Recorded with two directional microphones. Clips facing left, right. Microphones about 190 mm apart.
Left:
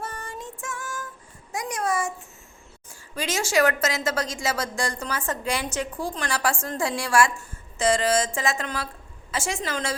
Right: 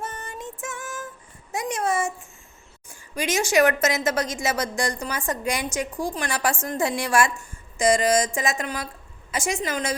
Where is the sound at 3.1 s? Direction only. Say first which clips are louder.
Right 3 dB; 15° right (ahead or behind).